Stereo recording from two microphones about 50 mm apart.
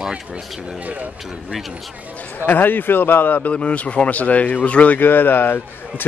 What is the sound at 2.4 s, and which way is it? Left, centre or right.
Speech, left.